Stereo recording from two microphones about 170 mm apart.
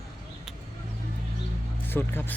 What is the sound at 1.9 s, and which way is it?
Speech, 10° left (ahead or behind).